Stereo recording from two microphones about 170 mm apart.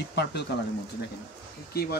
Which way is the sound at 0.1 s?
75° left (ahead or behind).